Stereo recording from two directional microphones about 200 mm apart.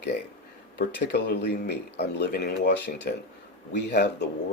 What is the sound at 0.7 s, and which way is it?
Speech, 55° left (ahead or behind).